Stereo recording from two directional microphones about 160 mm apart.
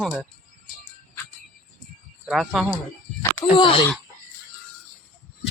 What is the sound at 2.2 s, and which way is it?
Speech, centre (ahead or behind).